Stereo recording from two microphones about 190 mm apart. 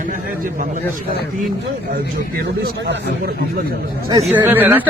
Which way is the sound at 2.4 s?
55° right (ahead or behind).